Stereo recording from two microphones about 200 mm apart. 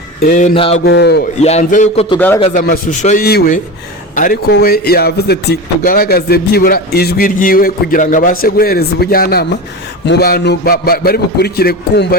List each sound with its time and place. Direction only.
0.2 s a man's voice: 40° left (ahead or behind)
0.9 s a man's voice: 55° left (ahead or behind)
1.4 s a man's voice: 35° left (ahead or behind)
2.1 s speech: 10° left (ahead or behind)
2.4 s a man's voice: 40° left (ahead or behind)